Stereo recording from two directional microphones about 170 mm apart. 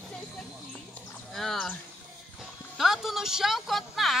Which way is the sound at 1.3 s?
Centre (ahead or behind).